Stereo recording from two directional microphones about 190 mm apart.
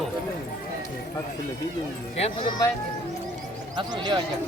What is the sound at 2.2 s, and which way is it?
Speech, 25° left (ahead or behind).